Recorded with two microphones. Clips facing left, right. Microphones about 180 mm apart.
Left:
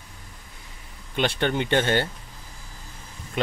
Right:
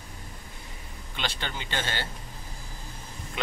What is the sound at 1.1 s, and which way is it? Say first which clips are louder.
Speech: left 11 dB; 60° left (ahead or behind).